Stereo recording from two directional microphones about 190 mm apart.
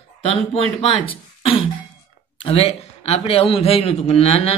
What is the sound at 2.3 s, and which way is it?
A man's voice, 30° left (ahead or behind).